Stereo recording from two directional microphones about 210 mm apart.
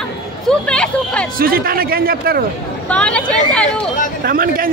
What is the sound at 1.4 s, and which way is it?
A man's voice, 45° right (ahead or behind).